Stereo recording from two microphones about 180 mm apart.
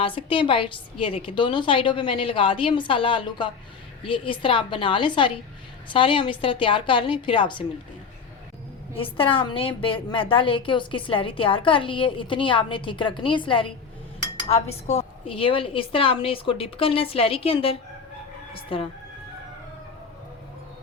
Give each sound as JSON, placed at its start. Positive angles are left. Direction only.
{"t": 0.0, "sound": "a woman's voice", "side_deg": 30}
{"t": 9.0, "sound": "a woman's voice", "side_deg": 30}